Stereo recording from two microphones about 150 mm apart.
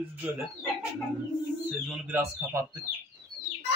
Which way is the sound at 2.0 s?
15° right (ahead or behind).